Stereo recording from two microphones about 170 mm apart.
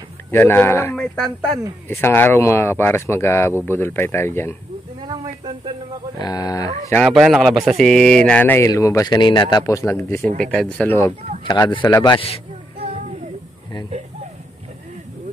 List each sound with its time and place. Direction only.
0.3 s speech: 10° left (ahead or behind)
0.9 s speech: centre (ahead or behind)
1.9 s speech: 15° left (ahead or behind)
5.0 s snake: 35° right (ahead or behind)
6.1 s speech: 20° left (ahead or behind)
7.0 s speech: centre (ahead or behind); by 12.2 s 25° left (ahead or behind)